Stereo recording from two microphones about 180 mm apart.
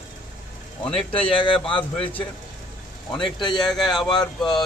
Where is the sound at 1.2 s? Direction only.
30° left (ahead or behind).